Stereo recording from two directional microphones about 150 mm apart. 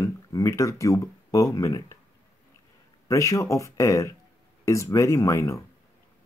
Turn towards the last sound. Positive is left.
turn(degrees=20)  # may be behind; listen again after turning